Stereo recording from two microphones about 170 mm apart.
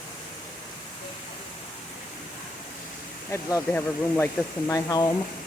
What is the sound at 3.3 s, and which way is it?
Speech, 15° left (ahead or behind).